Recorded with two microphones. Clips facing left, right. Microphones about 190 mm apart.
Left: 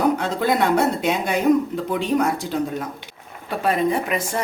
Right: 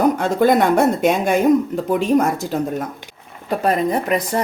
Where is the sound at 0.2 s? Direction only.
50° right (ahead or behind).